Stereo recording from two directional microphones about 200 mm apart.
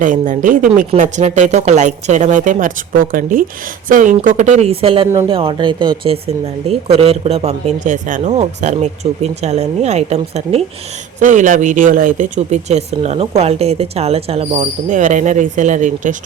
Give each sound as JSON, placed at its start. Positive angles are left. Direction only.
{"t": 0.0, "sound": "speech", "side_deg": -40}